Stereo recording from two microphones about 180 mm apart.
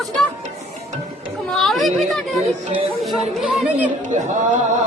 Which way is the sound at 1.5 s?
Centre (ahead or behind).